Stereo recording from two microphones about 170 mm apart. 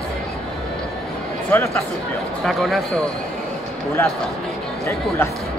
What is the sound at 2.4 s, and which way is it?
Speech, centre (ahead or behind).